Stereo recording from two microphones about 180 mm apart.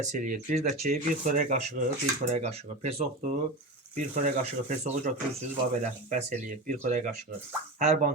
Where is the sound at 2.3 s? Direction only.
35° right (ahead or behind).